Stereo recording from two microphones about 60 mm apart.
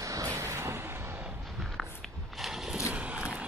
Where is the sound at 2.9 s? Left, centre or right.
Right.